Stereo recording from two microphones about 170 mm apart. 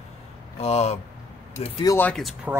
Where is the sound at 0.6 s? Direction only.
40° left (ahead or behind).